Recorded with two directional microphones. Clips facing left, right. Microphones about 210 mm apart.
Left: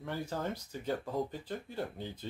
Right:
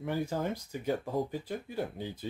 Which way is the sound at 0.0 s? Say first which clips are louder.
Right 4 dB; 15° right (ahead or behind).